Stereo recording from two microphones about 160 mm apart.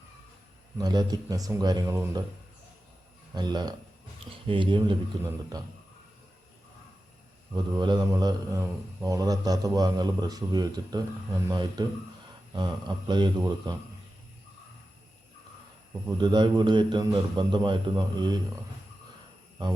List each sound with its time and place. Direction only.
0.8 s a man's voice: 25° right (ahead or behind)
3.3 s a man's voice: 25° right (ahead or behind)
7.5 s a man's voice: 25° right (ahead or behind)
16.0 s a man's voice: 30° right (ahead or behind)